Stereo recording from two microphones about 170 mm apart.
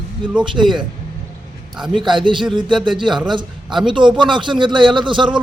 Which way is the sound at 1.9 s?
30° right (ahead or behind).